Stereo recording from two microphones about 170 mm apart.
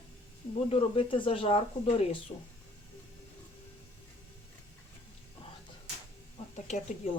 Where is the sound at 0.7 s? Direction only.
35° left (ahead or behind).